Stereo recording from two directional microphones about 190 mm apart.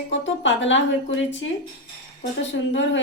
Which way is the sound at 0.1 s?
75° left (ahead or behind).